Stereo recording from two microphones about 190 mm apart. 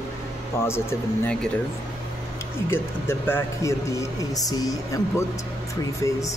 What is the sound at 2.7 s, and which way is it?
Speech, 10° left (ahead or behind).